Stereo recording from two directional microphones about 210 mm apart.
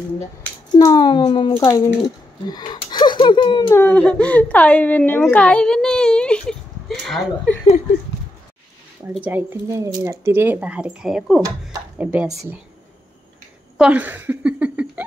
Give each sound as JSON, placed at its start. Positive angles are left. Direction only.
{"t": 0.7, "sound": "speech", "side_deg": 15}
{"t": 3.7, "sound": "a woman's voice", "side_deg": 10}
{"t": 9.1, "sound": "speech", "side_deg": -10}
{"t": 11.4, "sound": "speech", "side_deg": -10}
{"t": 13.7, "sound": "speech", "side_deg": -5}